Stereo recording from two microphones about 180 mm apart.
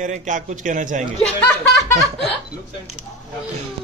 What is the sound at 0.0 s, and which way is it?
A man's voice, 45° right (ahead or behind).